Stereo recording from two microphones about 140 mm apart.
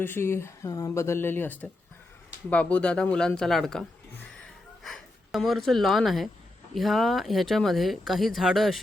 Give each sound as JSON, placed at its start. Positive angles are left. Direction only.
{"t": 0.0, "sound": "speech", "side_deg": 15}